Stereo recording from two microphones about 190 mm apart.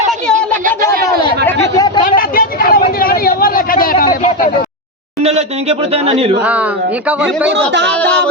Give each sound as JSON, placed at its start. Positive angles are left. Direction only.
{"t": 0.3, "sound": "a sound", "side_deg": -45}
{"t": 2.0, "sound": "vehicle", "side_deg": 45}
{"t": 3.0, "sound": "a sound", "side_deg": 50}
{"t": 5.2, "sound": "speech", "side_deg": -35}
{"t": 6.4, "sound": "speech", "side_deg": -5}
{"t": 7.7, "sound": "speech", "side_deg": -65}